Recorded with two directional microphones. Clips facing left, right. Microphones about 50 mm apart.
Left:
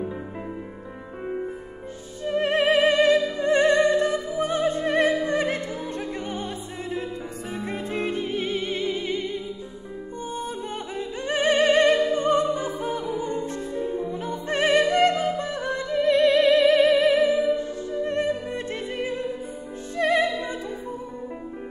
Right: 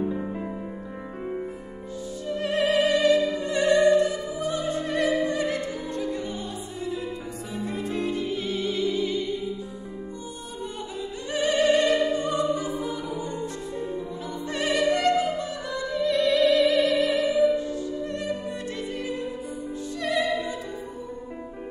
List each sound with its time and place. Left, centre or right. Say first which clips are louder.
2.2 s music: left 4 dB; left
7.7 s music: left 1 dB; left
11.0 s music: left 2 dB; left